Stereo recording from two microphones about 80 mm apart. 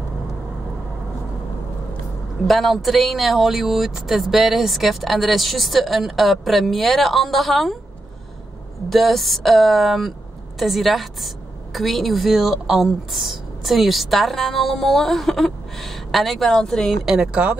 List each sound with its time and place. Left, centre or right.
2.4 s a woman's voice: centre
8.8 s a woman's voice: centre
17.0 s a woman's voice: centre